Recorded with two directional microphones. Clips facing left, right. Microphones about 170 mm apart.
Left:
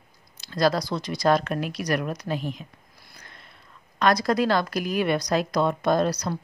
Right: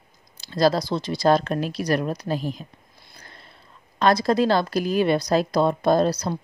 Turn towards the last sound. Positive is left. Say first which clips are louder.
# right 3 dB
turn(degrees=-30)  # may be behind; listen again after turning